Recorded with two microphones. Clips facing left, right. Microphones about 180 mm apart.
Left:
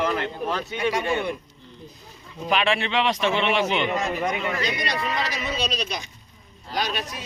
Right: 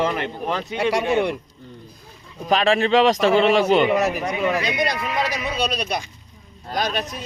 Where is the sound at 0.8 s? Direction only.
75° right (ahead or behind).